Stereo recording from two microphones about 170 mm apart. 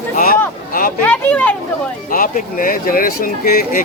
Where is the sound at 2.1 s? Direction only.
55° left (ahead or behind).